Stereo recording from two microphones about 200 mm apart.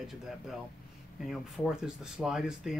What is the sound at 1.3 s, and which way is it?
Speech, 5° right (ahead or behind).